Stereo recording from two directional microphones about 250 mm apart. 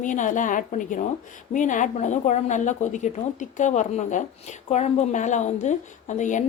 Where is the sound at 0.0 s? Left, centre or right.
Left.